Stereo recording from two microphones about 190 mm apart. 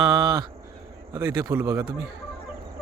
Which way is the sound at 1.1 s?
15° right (ahead or behind).